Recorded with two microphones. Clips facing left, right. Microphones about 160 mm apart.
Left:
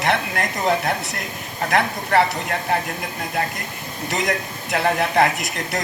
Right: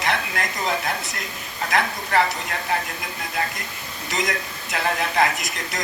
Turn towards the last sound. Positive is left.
turn(degrees=60)  # may be behind; listen again after turning